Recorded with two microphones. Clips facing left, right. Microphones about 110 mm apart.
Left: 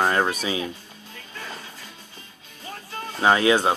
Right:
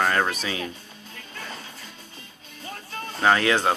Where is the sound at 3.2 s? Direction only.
20° left (ahead or behind).